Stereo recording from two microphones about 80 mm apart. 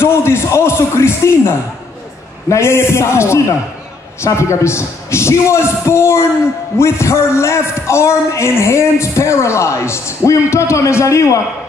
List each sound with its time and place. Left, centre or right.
0.0 s speech: left
2.5 s speech: left